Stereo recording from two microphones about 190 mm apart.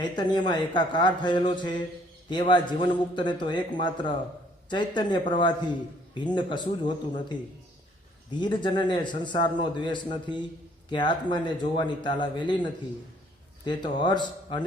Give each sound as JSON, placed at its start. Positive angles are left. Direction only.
{"t": 0.0, "sound": "a man's voice", "side_deg": 25}
{"t": 8.4, "sound": "a man's voice", "side_deg": 25}
{"t": 13.7, "sound": "a man's voice", "side_deg": 25}